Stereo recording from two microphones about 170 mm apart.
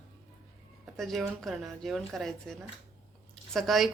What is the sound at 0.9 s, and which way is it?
Speech, centre (ahead or behind).